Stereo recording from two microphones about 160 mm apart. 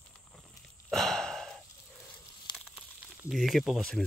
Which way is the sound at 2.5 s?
5° right (ahead or behind).